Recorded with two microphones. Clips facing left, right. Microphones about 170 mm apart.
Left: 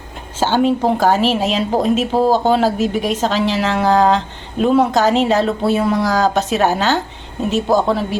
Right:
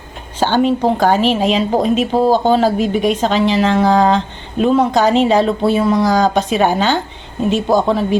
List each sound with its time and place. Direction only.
0.3 s speech: 5° left (ahead or behind)